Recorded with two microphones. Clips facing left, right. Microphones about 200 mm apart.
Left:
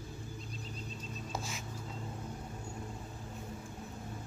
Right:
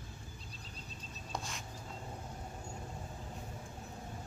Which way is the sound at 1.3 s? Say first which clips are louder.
Even; 5° left (ahead or behind).